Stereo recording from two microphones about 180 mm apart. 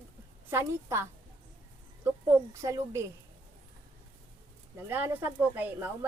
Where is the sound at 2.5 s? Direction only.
15° right (ahead or behind).